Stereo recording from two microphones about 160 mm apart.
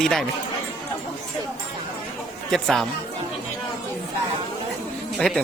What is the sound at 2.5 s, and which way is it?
Speech, centre (ahead or behind).